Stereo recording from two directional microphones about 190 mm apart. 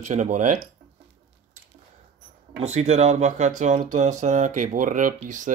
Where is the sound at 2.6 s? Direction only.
35° right (ahead or behind).